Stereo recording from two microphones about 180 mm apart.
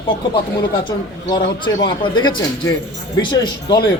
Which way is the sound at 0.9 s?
25° left (ahead or behind).